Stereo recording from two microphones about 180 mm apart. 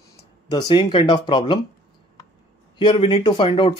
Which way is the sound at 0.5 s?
25° left (ahead or behind).